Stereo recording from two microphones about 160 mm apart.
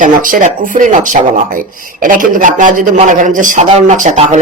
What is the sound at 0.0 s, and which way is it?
Speech, 55° right (ahead or behind).